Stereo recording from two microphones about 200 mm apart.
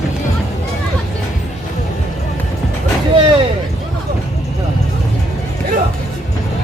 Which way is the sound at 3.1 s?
25° right (ahead or behind).